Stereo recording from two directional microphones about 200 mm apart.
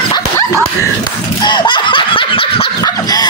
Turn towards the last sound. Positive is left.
turn(degrees=20)  # may be behind; listen again after turning